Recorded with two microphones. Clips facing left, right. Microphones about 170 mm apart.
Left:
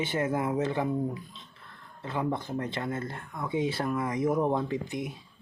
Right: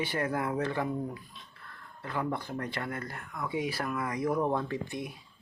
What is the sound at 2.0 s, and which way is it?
Speech, 20° left (ahead or behind).